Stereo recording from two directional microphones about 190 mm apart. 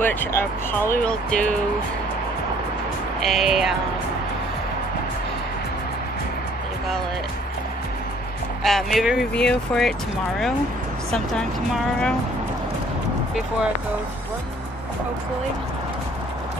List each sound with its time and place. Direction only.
0.0 s speech: 10° left (ahead or behind)
3.2 s speech: centre (ahead or behind)
8.6 s speech: centre (ahead or behind)
11.1 s speech: 5° left (ahead or behind)